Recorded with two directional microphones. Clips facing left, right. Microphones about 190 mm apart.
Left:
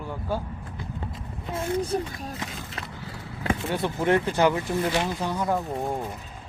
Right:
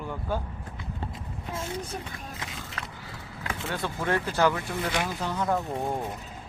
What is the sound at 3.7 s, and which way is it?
Speech, 20° left (ahead or behind).